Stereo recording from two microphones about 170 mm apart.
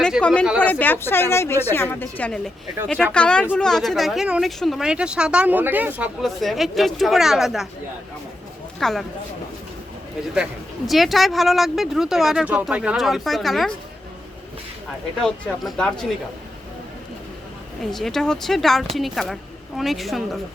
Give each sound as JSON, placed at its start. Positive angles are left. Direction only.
{"t": 0.0, "sound": "a sound", "side_deg": 5}
{"t": 0.6, "sound": "speech", "side_deg": 10}
{"t": 8.8, "sound": "speech", "side_deg": 0}
{"t": 10.3, "sound": "speech", "side_deg": -5}
{"t": 15.2, "sound": "speech", "side_deg": 5}
{"t": 17.9, "sound": "speech", "side_deg": 0}